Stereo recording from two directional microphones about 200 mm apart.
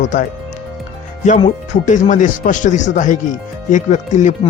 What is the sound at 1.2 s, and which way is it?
A man's voice, 35° left (ahead or behind).